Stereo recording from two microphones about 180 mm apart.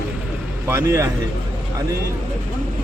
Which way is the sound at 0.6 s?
15° right (ahead or behind).